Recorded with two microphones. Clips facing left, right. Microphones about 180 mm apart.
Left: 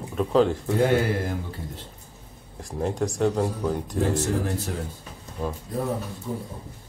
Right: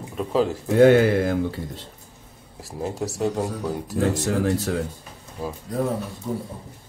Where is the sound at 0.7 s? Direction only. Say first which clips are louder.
Right 8 dB; 85° right.